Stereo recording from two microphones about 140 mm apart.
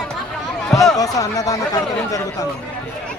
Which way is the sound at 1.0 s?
25° left (ahead or behind).